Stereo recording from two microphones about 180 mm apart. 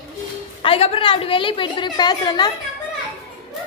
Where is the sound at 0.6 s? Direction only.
35° left (ahead or behind).